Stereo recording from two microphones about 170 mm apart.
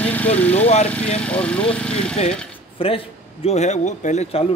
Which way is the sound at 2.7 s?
35° left (ahead or behind).